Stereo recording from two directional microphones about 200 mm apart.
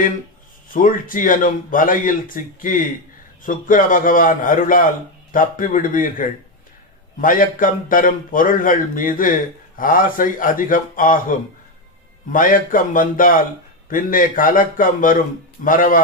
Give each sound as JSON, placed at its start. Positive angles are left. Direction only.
{"t": 0.7, "sound": "a man's voice", "side_deg": 45}